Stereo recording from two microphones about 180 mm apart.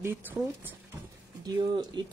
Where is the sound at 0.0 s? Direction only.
10° right (ahead or behind).